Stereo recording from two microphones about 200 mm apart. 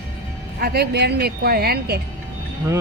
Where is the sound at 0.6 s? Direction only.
55° right (ahead or behind).